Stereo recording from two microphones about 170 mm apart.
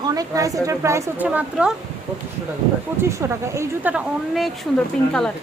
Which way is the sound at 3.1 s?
15° right (ahead or behind).